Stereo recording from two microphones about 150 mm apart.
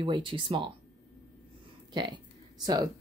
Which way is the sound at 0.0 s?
30° right (ahead or behind).